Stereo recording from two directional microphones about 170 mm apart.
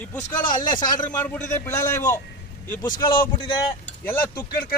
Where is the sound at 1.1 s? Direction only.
10° left (ahead or behind).